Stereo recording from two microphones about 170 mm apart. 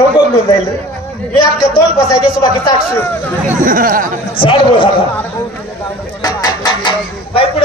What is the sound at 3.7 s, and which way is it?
Speech, 55° right (ahead or behind).